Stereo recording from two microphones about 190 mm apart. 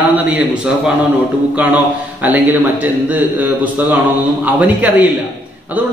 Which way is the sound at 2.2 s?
10° right (ahead or behind).